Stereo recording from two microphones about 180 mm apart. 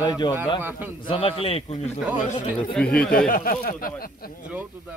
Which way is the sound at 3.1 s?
50° left (ahead or behind).